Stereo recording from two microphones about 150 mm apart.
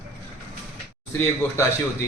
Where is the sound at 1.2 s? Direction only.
15° left (ahead or behind).